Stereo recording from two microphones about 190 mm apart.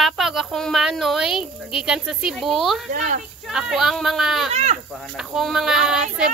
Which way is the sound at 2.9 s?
40° right (ahead or behind).